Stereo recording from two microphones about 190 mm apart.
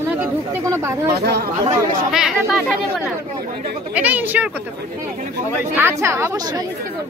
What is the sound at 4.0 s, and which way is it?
Speech, 10° right (ahead or behind).